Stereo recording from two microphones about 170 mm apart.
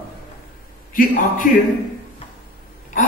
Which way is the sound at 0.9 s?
55° left (ahead or behind).